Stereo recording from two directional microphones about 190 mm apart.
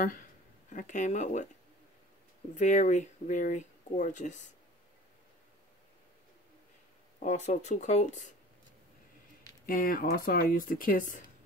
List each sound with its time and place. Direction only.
0.0 s speech: 45° left (ahead or behind)
2.5 s speech: 40° left (ahead or behind)
7.2 s speech: 40° left (ahead or behind)
9.7 s speech: 50° left (ahead or behind)